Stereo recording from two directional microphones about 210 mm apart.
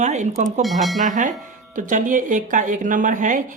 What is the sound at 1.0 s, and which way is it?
Speech, 35° right (ahead or behind).